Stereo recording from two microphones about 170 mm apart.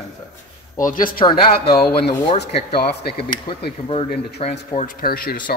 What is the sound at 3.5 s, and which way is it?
Speech, 30° left (ahead or behind).